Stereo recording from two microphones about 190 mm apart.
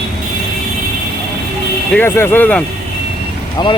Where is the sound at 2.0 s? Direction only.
15° left (ahead or behind).